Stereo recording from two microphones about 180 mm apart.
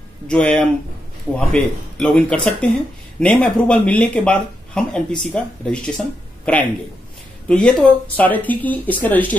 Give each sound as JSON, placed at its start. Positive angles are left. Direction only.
{"t": 0.3, "sound": "speech", "side_deg": 5}